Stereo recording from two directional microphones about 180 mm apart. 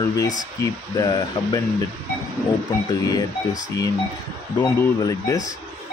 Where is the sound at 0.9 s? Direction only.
20° left (ahead or behind).